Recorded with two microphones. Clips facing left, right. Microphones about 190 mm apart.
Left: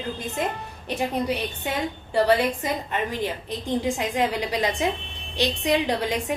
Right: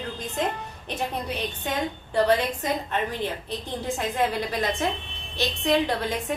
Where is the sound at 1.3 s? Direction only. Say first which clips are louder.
Left 1 dB; 10° left (ahead or behind).